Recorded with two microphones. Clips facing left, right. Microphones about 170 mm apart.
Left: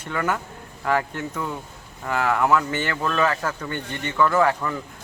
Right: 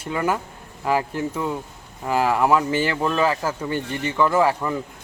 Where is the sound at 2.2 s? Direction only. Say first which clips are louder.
Right 1 dB; 15° right (ahead or behind).